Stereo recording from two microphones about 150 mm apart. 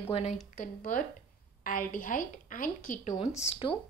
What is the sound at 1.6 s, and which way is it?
A woman's voice, 65° left (ahead or behind).